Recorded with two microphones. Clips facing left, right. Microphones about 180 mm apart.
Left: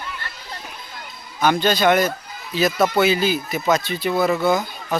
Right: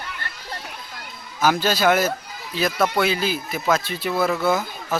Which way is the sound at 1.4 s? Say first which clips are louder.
Left 2 dB; 5° right (ahead or behind).